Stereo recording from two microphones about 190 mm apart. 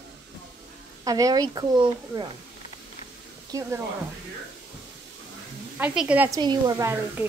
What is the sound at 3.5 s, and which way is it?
Speech, 15° right (ahead or behind).